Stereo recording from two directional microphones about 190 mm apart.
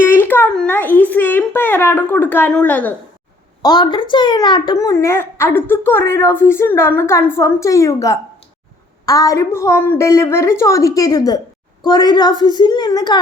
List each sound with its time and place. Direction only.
0.0 s a child's voice: 10° left (ahead or behind)
3.6 s a child's voice: 20° left (ahead or behind)